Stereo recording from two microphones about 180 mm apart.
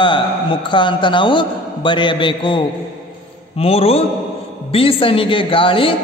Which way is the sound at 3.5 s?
35° left (ahead or behind).